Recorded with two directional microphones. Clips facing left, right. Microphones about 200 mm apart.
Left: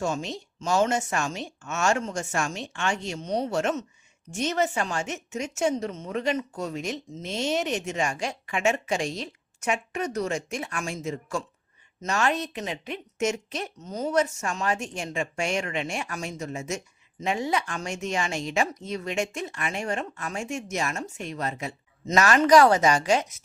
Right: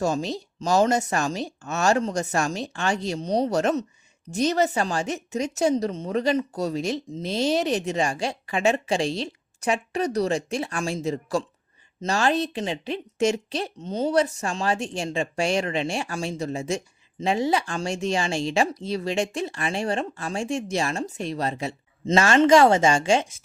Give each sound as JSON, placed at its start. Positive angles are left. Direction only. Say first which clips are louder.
{"t": 0.0, "sound": "speech", "louder": "right 4 dB", "side_deg": -35}